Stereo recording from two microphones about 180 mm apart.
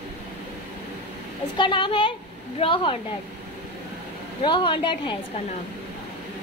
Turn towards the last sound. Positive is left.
turn(degrees=25)  # may be behind; listen again after turning